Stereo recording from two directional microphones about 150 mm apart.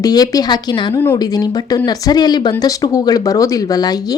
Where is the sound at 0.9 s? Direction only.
15° left (ahead or behind).